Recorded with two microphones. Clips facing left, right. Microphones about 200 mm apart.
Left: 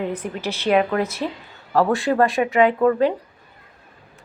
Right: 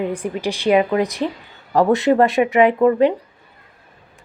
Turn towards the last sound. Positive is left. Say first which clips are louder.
# right 3 dB
turn(degrees=-15)  # may be behind; listen again after turning